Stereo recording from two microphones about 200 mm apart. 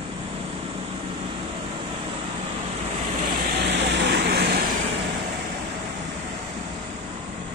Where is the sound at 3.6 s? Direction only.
60° right (ahead or behind).